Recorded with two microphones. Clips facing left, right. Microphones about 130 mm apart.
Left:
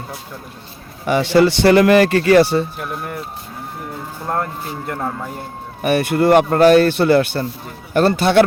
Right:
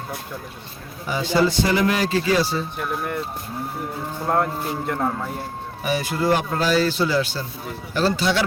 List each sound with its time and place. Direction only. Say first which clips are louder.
1.0 s a man's voice: left 7 dB; 70° left (ahead or behind)
2.7 s speech: even; 5° left (ahead or behind)
4.9 s speech: left 1 dB; centre (ahead or behind)
5.8 s a man's voice: left 7 dB; 60° left (ahead or behind)